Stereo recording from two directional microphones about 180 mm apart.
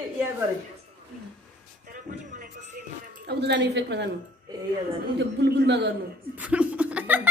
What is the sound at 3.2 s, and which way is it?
Speech, 75° right (ahead or behind).